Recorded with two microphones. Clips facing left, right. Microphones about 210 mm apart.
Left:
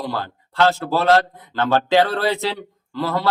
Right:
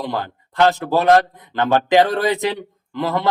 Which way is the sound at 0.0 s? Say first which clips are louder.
Right 2 dB; 20° right (ahead or behind).